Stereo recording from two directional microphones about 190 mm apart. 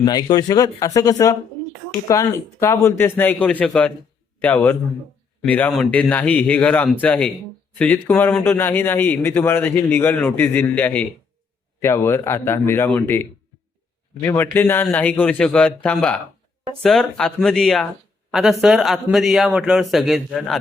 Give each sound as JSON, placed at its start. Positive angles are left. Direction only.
{"t": 0.0, "sound": "a man's voice", "side_deg": 20}